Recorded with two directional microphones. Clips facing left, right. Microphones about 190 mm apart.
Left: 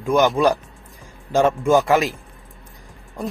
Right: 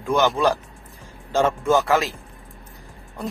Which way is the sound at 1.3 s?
15° left (ahead or behind).